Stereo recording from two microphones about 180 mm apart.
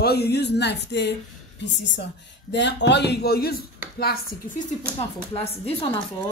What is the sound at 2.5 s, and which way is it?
Speech, 75° left (ahead or behind).